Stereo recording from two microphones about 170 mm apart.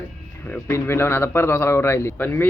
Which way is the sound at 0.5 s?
15° left (ahead or behind).